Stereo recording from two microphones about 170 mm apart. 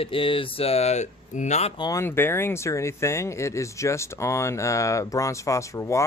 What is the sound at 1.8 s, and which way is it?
Speech, 20° left (ahead or behind).